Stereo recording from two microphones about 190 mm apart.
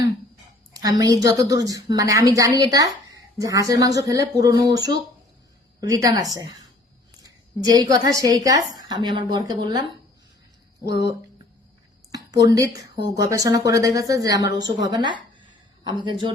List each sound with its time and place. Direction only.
0.7 s a woman's voice: 20° right (ahead or behind)
12.1 s speech: 20° right (ahead or behind)
14.8 s a sound: 25° right (ahead or behind)